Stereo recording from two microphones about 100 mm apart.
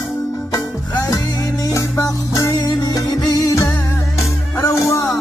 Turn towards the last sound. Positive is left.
turn(degrees=30)  # may be behind; listen again after turning